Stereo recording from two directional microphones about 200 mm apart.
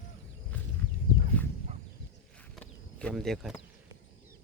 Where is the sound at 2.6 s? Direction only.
5° left (ahead or behind).